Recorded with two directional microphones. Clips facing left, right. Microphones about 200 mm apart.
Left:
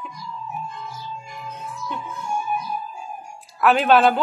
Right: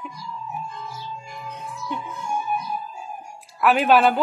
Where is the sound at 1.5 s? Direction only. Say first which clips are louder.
Even; 15° right (ahead or behind).